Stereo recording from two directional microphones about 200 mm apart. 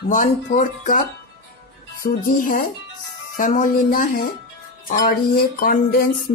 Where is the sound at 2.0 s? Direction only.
45° left (ahead or behind).